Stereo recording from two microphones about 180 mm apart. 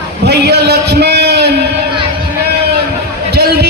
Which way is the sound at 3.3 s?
60° right (ahead or behind).